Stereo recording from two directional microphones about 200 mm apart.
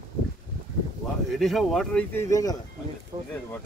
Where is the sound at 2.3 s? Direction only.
20° left (ahead or behind).